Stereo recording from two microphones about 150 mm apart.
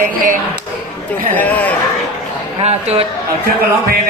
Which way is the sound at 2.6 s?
45° right (ahead or behind).